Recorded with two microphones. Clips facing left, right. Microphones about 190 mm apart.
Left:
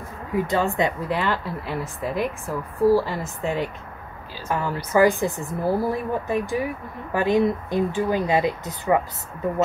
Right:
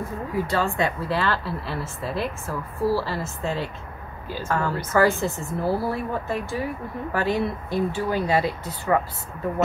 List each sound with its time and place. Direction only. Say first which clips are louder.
0.4 s a woman's voice: left 2 dB; 20° left (ahead or behind)